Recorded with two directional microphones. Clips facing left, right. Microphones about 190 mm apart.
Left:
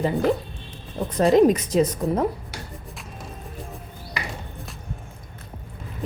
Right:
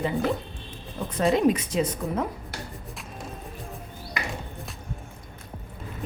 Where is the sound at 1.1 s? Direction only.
40° left (ahead or behind).